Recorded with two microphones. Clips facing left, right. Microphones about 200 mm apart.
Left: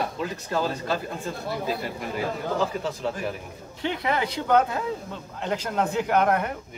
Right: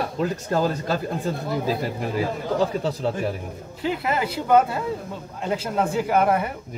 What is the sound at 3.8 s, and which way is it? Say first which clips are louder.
Speech: right 2 dB; 5° right (ahead or behind).